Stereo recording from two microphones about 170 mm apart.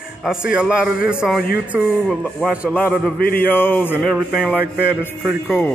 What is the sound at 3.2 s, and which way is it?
Speech, 60° left (ahead or behind).